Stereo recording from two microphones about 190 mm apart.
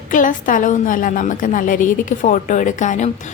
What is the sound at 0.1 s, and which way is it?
A woman's voice, 45° left (ahead or behind).